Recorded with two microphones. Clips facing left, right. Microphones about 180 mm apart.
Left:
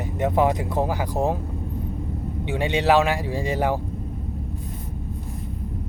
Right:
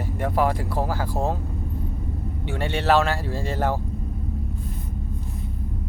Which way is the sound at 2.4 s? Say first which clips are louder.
Left 2 dB; 15° left (ahead or behind).